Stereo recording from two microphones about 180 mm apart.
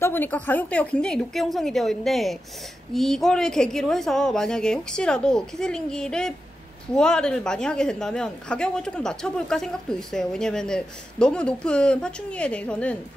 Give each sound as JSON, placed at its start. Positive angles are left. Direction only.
{"t": 0.0, "sound": "a woman's voice", "side_deg": 10}